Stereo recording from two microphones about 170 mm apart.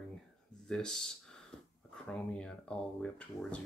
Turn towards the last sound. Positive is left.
turn(degrees=5)  # may be behind; listen again after turning